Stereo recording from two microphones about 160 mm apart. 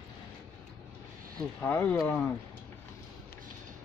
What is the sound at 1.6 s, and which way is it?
Speech, 10° left (ahead or behind).